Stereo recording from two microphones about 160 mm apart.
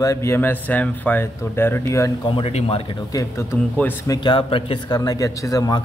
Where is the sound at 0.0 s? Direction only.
20° left (ahead or behind).